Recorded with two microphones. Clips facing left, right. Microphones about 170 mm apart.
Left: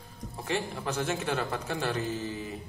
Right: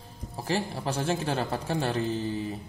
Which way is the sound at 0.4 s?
30° right (ahead or behind).